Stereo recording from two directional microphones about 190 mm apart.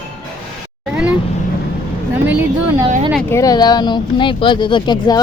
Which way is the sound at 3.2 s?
15° left (ahead or behind).